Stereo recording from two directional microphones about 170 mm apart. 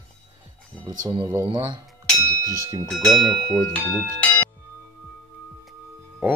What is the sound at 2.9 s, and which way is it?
Speech, centre (ahead or behind).